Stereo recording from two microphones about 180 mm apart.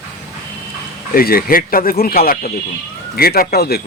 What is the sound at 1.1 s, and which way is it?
Speech, 55° left (ahead or behind).